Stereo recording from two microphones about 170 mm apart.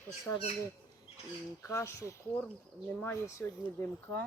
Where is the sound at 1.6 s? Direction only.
15° left (ahead or behind).